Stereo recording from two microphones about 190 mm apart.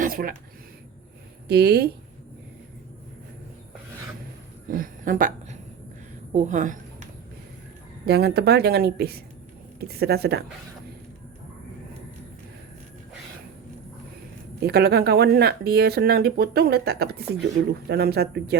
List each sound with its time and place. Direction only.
0.0 s speech: 50° right (ahead or behind)
1.5 s speech: 60° right (ahead or behind)
4.7 s a woman's voice: 45° right (ahead or behind)
8.0 s speech: 60° right (ahead or behind)
14.6 s speech: 55° right (ahead or behind)